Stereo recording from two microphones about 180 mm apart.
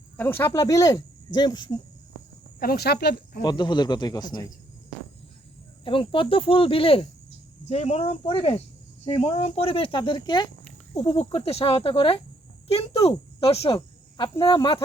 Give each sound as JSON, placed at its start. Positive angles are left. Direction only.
{"t": 0.2, "sound": "speech", "side_deg": 10}
{"t": 2.6, "sound": "speech", "side_deg": 60}
{"t": 3.4, "sound": "speech", "side_deg": 25}
{"t": 5.8, "sound": "speech", "side_deg": 30}